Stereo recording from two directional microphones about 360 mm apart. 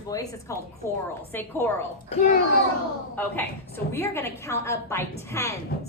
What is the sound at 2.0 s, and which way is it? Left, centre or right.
Speech, centre.